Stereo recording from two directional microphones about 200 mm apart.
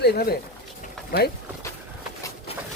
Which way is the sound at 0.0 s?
50° left (ahead or behind).